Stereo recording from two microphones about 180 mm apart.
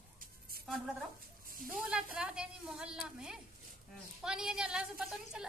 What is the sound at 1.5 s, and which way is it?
Speech, 50° right (ahead or behind).